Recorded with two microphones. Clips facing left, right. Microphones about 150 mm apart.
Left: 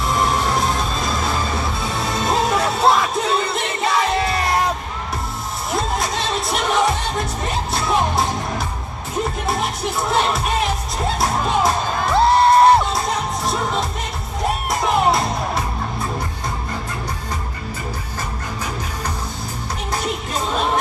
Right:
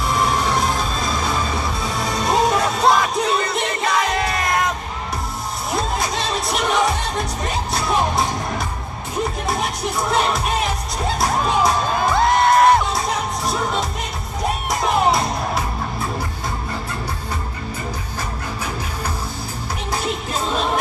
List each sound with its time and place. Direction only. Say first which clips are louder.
0.0 s music: even; centre (ahead or behind)
4.1 s music: left 1 dB; 30° left (ahead or behind)
5.7 s music: left 1 dB; centre (ahead or behind)
11.0 s crowd: right 1 dB; centre (ahead or behind)
12.2 s music: left 3 dB; 30° left (ahead or behind)
12.9 s music: left 1 dB; centre (ahead or behind)